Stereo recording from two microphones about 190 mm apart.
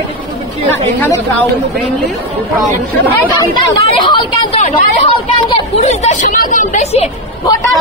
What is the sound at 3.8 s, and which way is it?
Speech, 25° left (ahead or behind).